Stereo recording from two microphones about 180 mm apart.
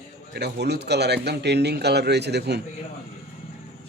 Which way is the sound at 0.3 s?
65° right (ahead or behind).